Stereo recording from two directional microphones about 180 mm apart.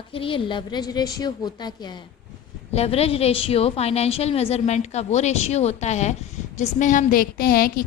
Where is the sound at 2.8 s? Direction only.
35° left (ahead or behind).